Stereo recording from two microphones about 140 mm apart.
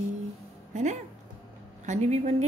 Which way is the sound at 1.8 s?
55° right (ahead or behind).